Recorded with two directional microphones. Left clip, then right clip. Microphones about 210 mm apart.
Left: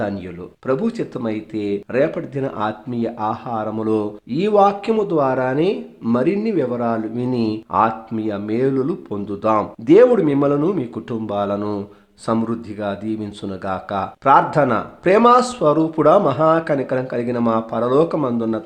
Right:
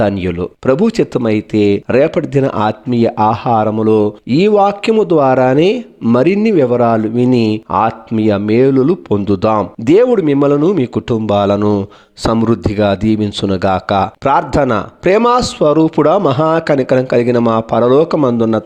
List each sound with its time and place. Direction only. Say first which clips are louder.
0.0 s speech: right 11 dB; 40° right (ahead or behind)